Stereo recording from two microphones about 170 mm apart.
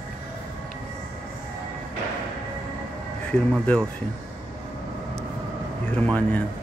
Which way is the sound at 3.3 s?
10° left (ahead or behind).